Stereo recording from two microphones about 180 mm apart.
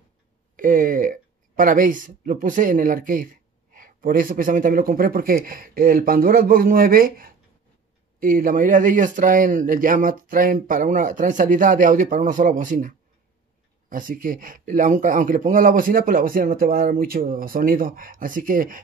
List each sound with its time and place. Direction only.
0.6 s speech: 50° right (ahead or behind)